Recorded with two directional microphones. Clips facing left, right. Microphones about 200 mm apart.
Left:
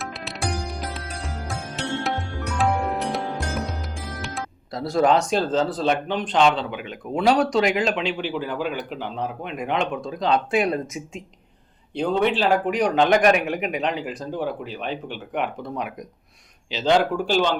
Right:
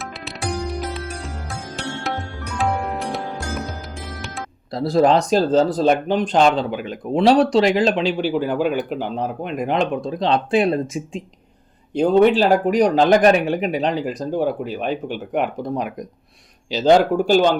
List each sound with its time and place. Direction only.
0.9 s music: centre (ahead or behind)
4.7 s speech: 35° right (ahead or behind)
11.9 s speech: 45° right (ahead or behind)